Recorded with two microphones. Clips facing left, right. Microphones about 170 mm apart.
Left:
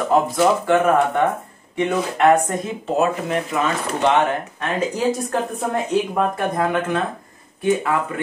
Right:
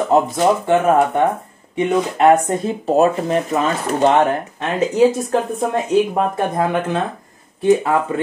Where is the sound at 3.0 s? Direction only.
35° right (ahead or behind).